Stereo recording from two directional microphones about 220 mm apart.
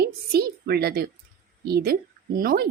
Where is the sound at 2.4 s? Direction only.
45° right (ahead or behind).